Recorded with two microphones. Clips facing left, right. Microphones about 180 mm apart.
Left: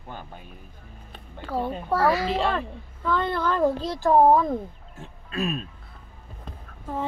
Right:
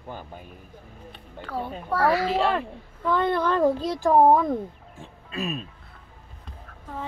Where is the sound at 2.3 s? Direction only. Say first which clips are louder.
Right 2 dB; 5° right (ahead or behind).